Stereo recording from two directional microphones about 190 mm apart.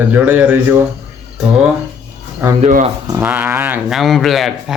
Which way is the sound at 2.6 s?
40° right (ahead or behind).